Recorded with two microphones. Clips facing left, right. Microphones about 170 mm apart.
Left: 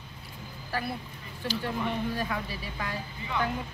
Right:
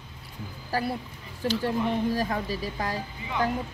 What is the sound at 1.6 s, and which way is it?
Speech, 35° right (ahead or behind).